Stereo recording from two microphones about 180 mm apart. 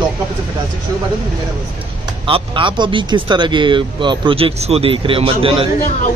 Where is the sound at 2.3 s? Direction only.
25° right (ahead or behind).